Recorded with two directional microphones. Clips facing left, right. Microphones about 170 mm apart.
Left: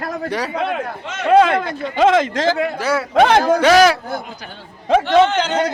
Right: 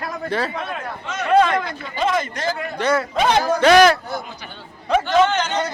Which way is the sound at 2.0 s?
90° left.